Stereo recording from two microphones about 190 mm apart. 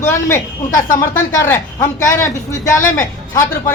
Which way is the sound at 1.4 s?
15° left (ahead or behind).